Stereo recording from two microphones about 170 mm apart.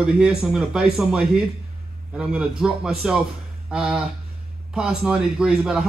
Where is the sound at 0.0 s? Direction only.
5° right (ahead or behind).